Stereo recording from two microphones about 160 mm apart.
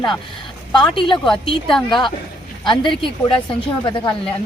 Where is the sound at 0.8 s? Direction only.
30° left (ahead or behind).